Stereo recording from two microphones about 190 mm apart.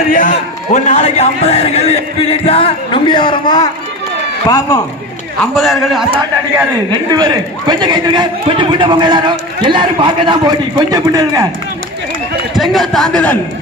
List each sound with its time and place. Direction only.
0.1 s a man's voice: 40° left (ahead or behind); by 4.7 s 20° left (ahead or behind)
5.4 s a man's voice: centre (ahead or behind)
6.9 s a man's voice: 20° right (ahead or behind)
12.5 s a man's voice: centre (ahead or behind)